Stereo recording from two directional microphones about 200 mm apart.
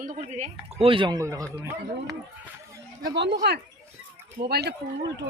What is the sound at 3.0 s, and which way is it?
Speech, 60° right (ahead or behind).